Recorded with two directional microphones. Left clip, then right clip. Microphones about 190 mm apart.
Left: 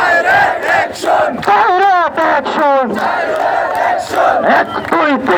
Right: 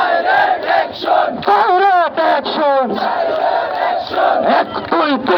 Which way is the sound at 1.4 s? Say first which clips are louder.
Left 2 dB; 20° right (ahead or behind).